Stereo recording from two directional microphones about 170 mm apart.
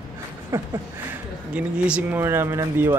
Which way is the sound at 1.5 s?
5° right (ahead or behind).